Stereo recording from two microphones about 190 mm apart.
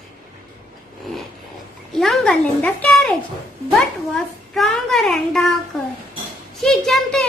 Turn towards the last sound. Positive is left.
turn(degrees=0)  # may be behind; listen again after turning